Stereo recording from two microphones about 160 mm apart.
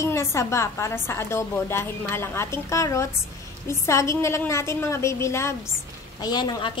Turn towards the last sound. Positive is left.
turn(degrees=30)  # may be behind; listen again after turning